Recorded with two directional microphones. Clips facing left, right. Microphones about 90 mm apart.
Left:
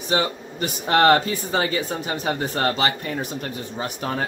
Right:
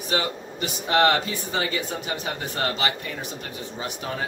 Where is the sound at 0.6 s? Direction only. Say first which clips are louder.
Left 3 dB; 45° left (ahead or behind).